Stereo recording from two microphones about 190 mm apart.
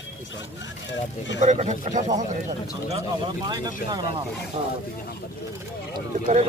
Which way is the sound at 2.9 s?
20° right (ahead or behind).